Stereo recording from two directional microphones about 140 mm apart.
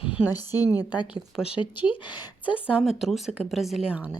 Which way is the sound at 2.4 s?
10° right (ahead or behind).